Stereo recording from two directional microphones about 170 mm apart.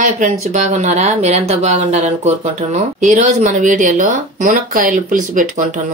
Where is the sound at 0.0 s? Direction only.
45° right (ahead or behind).